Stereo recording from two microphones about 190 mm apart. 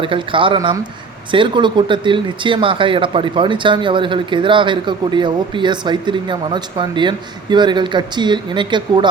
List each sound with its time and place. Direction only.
0.0 s speech: 25° right (ahead or behind)